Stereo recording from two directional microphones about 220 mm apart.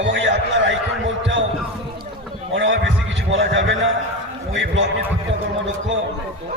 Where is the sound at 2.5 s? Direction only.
55° right (ahead or behind).